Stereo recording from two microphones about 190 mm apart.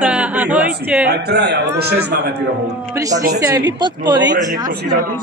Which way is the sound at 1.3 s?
60° right (ahead or behind).